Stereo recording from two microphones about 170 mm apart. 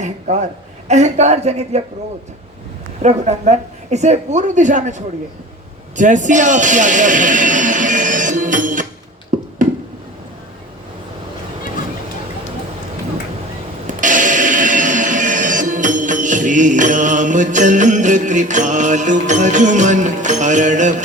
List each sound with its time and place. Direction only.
0.0 s a sound: 45° right (ahead or behind)
0.9 s a woman's voice: 45° right (ahead or behind)
3.0 s a woman's voice: 40° right (ahead or behind)
6.0 s music: 45° right (ahead or behind)
9.3 s a sound: 50° right (ahead or behind)
13.8 s music: 50° right (ahead or behind)